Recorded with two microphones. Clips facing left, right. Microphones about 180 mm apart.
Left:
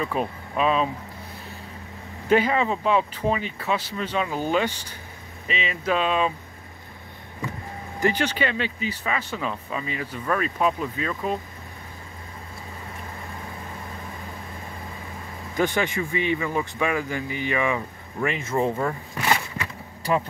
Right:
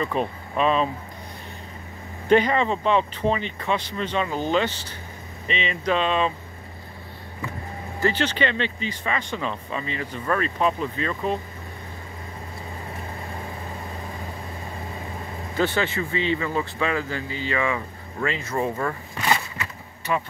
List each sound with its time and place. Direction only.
0.0 s speech: 5° left (ahead or behind)
2.2 s speech: 5° left (ahead or behind)
8.0 s speech: 10° left (ahead or behind)
15.5 s speech: 15° left (ahead or behind)
20.1 s speech: 35° left (ahead or behind)